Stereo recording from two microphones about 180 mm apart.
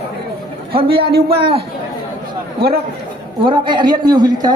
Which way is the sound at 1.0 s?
60° right (ahead or behind).